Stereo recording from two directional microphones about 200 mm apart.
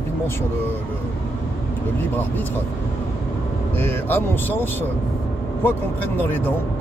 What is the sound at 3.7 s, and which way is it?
Speech, 10° left (ahead or behind).